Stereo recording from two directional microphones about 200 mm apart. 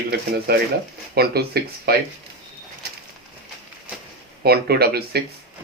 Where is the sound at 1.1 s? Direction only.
50° right (ahead or behind).